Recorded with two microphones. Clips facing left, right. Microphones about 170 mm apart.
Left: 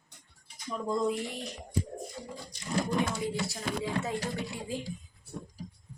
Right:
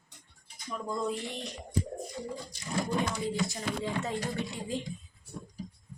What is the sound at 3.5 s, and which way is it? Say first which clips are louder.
Speech: even; 5° left (ahead or behind).